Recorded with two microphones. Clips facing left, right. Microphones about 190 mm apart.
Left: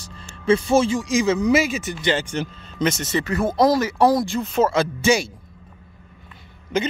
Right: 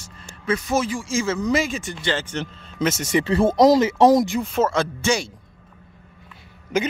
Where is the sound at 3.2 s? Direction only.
30° right (ahead or behind).